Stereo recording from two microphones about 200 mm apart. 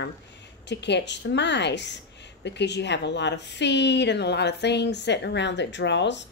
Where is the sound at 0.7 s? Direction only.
60° left (ahead or behind).